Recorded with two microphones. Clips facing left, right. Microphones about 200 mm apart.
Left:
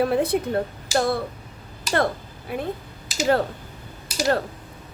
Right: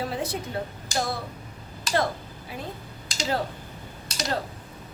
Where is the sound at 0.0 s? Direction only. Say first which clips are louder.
Left 9 dB; 60° left (ahead or behind).